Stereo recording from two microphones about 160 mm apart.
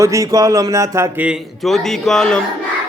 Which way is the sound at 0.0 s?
20° right (ahead or behind).